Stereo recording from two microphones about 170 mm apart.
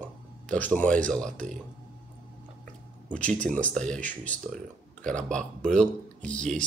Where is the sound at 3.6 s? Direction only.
5° left (ahead or behind).